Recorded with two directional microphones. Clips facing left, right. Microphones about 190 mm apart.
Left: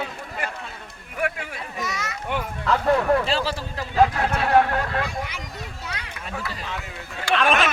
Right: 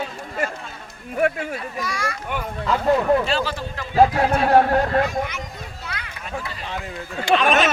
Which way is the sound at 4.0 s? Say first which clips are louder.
Right 4 dB; 35° right (ahead or behind).